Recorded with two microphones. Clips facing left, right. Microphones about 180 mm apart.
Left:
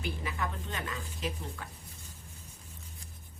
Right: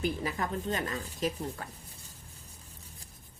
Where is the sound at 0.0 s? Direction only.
40° right (ahead or behind).